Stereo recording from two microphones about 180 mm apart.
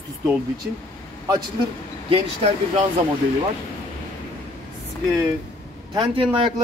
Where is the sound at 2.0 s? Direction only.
35° right (ahead or behind).